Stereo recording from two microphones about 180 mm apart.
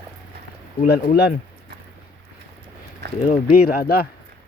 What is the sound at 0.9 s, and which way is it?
Speech, 60° left (ahead or behind).